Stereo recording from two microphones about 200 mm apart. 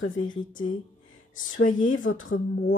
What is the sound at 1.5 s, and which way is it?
Speech, 40° left (ahead or behind).